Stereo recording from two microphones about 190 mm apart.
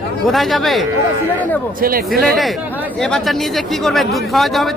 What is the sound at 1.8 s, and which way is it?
Speech, 50° right (ahead or behind).